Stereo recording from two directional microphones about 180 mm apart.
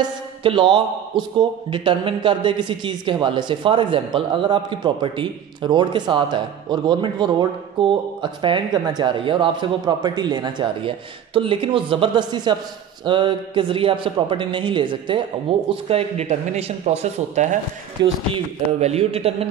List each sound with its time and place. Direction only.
0.0 s a man's voice: 30° right (ahead or behind)
18.0 s a man's voice: 25° right (ahead or behind)
18.3 s speech: 35° right (ahead or behind)